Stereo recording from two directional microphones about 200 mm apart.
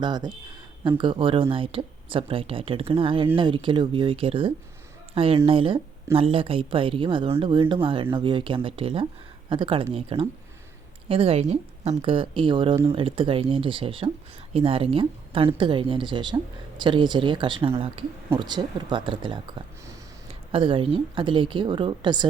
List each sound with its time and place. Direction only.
0.0 s speech: 20° right (ahead or behind)
20.5 s speech: 25° right (ahead or behind)